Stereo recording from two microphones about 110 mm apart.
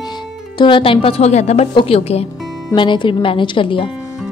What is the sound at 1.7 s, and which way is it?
Speech, 65° left (ahead or behind).